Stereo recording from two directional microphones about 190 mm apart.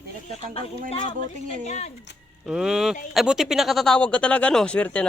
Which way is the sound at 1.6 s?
35° left (ahead or behind).